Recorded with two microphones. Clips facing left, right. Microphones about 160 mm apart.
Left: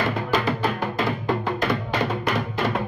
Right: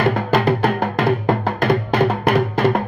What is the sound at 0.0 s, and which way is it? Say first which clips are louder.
Music: right 6 dB; 60° right (ahead or behind).